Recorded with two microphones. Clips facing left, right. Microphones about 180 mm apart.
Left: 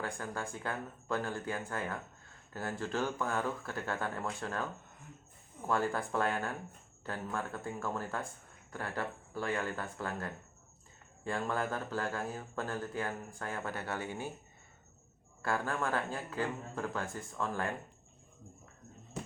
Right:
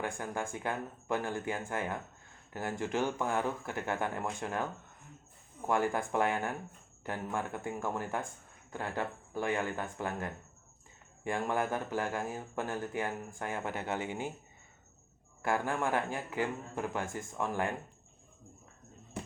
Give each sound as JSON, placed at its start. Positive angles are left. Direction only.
{"t": 0.0, "sound": "speech", "side_deg": -15}
{"t": 15.4, "sound": "speech", "side_deg": -15}